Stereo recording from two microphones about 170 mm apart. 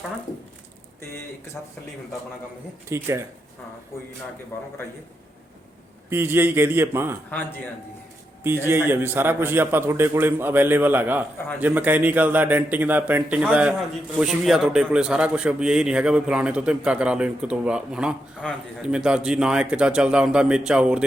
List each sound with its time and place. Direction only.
2.9 s a man's voice: 15° right (ahead or behind)
4.5 s speech: 15° left (ahead or behind)
6.1 s a man's voice: 15° right (ahead or behind)
7.3 s speech: 10° left (ahead or behind)
8.4 s a man's voice: 15° right (ahead or behind)